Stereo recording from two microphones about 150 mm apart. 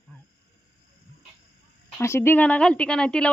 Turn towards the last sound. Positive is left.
turn(degrees=5)  # may be behind; listen again after turning